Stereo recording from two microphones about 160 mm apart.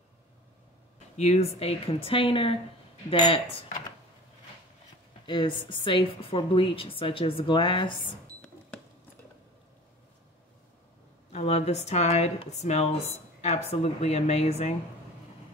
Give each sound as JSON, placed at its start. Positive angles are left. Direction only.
{"t": 1.1, "sound": "a woman's voice", "side_deg": 45}
{"t": 5.2, "sound": "a woman's voice", "side_deg": 30}
{"t": 11.3, "sound": "speech", "side_deg": 40}